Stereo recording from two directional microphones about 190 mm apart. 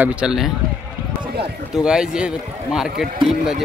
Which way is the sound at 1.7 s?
5° right (ahead or behind).